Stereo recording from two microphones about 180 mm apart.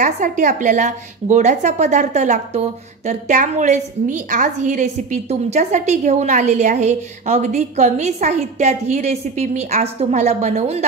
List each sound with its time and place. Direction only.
0.0 s a woman's voice: 45° right (ahead or behind)